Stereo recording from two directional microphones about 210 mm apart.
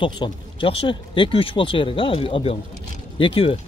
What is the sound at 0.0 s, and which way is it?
Speech, 20° left (ahead or behind).